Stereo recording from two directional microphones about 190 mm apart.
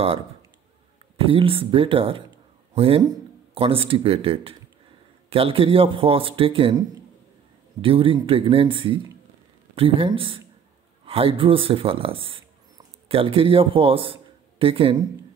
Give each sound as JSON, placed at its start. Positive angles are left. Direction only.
{"t": 1.2, "sound": "speech", "side_deg": -30}
{"t": 7.8, "sound": "speech", "side_deg": -30}